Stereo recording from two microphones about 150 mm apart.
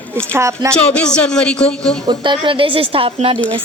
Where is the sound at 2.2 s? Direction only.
35° right (ahead or behind).